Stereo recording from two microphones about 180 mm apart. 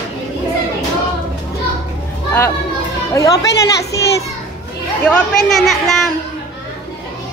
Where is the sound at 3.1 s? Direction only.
20° left (ahead or behind).